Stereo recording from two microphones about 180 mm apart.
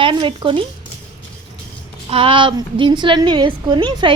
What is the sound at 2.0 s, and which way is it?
A woman's voice, 30° right (ahead or behind).